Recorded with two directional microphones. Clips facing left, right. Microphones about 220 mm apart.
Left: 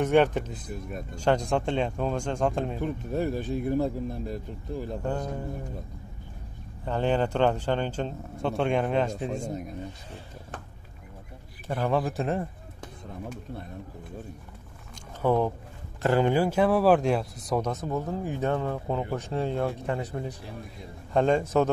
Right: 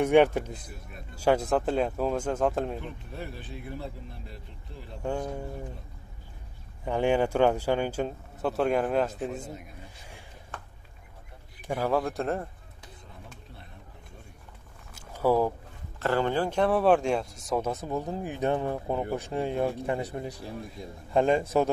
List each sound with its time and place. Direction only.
0.0 s speech: 10° right (ahead or behind)
2.8 s speech: 45° left (ahead or behind)
5.0 s speech: 10° right (ahead or behind)
6.8 s speech: 10° right (ahead or behind)
11.6 s speech: 10° right (ahead or behind)
12.0 s speech: centre (ahead or behind)
15.0 s a sound: 5° right (ahead or behind)
16.0 s speech: 15° left (ahead or behind); by 21.6 s 10° right (ahead or behind)